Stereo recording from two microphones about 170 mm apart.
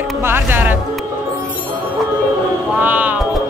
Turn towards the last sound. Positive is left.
turn(degrees=-10)  # may be behind; listen again after turning